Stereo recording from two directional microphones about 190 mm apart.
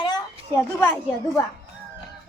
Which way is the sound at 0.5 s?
10° left (ahead or behind).